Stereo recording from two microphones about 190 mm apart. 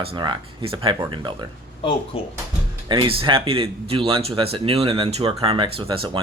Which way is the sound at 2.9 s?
25° right (ahead or behind).